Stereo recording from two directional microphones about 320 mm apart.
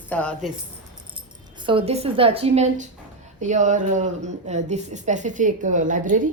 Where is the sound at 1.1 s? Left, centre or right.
Centre.